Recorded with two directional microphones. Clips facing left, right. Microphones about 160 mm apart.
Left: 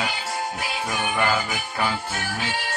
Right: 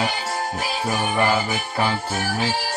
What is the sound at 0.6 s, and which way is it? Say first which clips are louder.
Music: right 3 dB; 30° right (ahead or behind).